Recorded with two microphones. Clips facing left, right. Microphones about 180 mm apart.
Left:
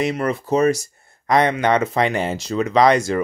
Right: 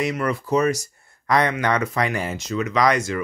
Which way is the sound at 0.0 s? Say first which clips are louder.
Left 2 dB; 25° left (ahead or behind).